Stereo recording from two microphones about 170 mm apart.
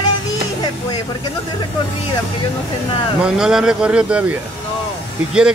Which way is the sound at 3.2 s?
5° right (ahead or behind).